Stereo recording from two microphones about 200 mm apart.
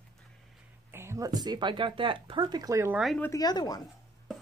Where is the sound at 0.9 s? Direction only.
15° right (ahead or behind).